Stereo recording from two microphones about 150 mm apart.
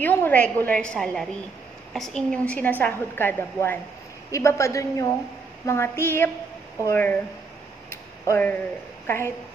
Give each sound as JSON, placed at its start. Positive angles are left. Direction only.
{"t": 0.0, "sound": "a woman's voice", "side_deg": 10}
{"t": 7.9, "sound": "tick-tock", "side_deg": 15}
{"t": 9.0, "sound": "a woman's voice", "side_deg": 15}